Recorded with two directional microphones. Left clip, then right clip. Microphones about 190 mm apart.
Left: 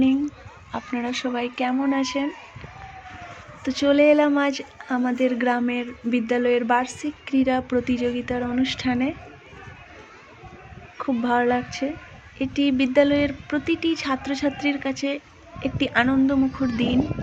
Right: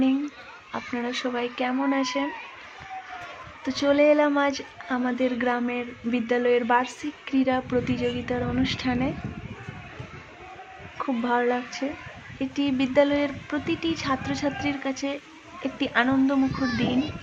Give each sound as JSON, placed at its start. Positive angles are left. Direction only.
{"t": 0.0, "sound": "speech", "side_deg": 20}
{"t": 3.6, "sound": "speech", "side_deg": 20}
{"t": 11.0, "sound": "speech", "side_deg": 20}